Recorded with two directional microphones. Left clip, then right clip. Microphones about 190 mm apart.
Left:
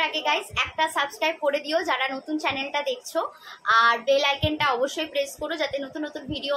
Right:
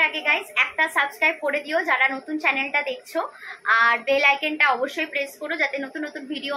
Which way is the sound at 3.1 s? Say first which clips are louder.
Right 1 dB; centre (ahead or behind).